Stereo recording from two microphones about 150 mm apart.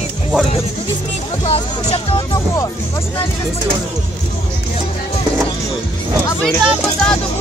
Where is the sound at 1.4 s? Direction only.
40° left (ahead or behind).